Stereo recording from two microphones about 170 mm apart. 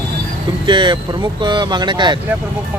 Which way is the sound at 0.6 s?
25° right (ahead or behind).